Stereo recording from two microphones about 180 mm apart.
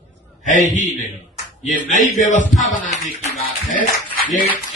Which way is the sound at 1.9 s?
45° left (ahead or behind).